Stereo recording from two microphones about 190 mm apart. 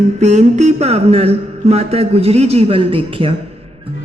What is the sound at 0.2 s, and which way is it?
Speech, 35° right (ahead or behind).